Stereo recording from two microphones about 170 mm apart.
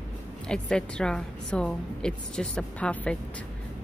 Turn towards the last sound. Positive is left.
turn(degrees=10)  # may be behind; listen again after turning